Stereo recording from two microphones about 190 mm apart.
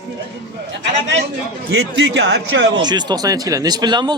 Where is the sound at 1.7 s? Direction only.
65° right (ahead or behind).